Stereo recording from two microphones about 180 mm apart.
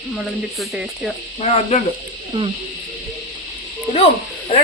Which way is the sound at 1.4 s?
35° left (ahead or behind).